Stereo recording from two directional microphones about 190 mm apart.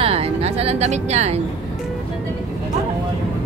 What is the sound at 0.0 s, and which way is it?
Music, 30° right (ahead or behind).